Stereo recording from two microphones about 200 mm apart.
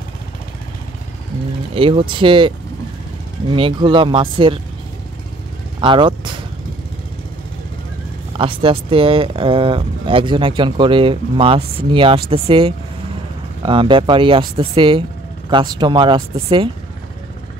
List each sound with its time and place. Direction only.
1.8 s speech: 25° right (ahead or behind)
5.8 s speech: 25° right (ahead or behind)
8.4 s speech: 25° right (ahead or behind)